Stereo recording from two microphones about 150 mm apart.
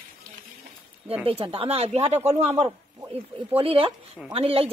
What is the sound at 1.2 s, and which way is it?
Speech, 40° right (ahead or behind).